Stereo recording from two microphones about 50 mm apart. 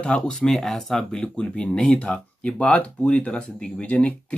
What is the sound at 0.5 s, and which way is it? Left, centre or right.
Speech, centre.